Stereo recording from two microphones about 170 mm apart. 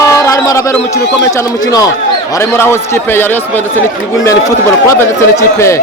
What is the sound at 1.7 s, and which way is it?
A man's voice, 20° left (ahead or behind).